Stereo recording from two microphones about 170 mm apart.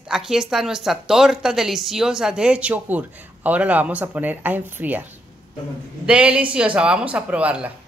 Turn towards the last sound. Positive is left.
turn(degrees=-5)  # may be behind; listen again after turning